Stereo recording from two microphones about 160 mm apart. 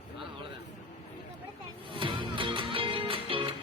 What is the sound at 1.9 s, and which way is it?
Music, 30° right (ahead or behind).